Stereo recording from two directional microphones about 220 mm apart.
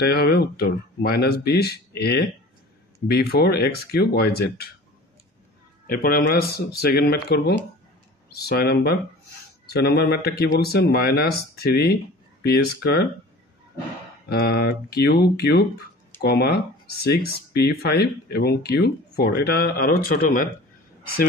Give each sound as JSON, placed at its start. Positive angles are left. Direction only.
{"t": 0.0, "sound": "speech", "side_deg": 45}
{"t": 5.9, "sound": "speech", "side_deg": 40}
{"t": 14.3, "sound": "speech", "side_deg": 45}